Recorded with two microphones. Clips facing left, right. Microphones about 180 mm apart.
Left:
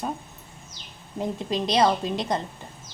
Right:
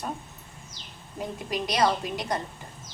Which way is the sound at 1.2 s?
25° left (ahead or behind).